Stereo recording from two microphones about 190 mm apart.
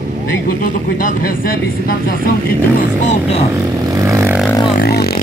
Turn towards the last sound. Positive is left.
turn(degrees=55)  # may be behind; listen again after turning